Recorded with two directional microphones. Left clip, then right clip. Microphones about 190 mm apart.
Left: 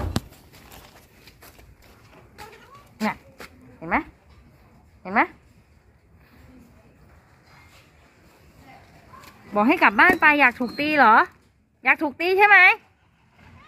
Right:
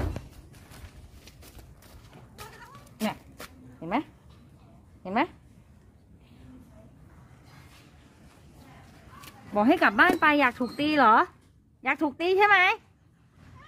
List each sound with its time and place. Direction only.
3.1 s a sound: 10° left (ahead or behind)
5.0 s speech: 5° left (ahead or behind)
9.5 s speech: 5° right (ahead or behind)